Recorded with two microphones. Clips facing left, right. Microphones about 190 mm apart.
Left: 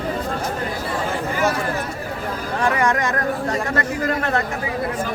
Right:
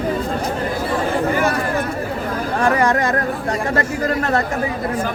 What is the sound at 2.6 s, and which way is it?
Speech, 40° right (ahead or behind).